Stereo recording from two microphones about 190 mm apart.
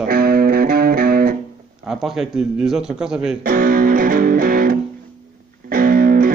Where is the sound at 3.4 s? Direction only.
50° right (ahead or behind).